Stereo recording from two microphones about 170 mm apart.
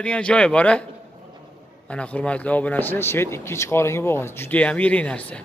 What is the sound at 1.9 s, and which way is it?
A man's voice, 5° left (ahead or behind).